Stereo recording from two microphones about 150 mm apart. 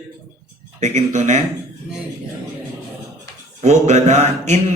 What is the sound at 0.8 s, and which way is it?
Speech, 50° right (ahead or behind).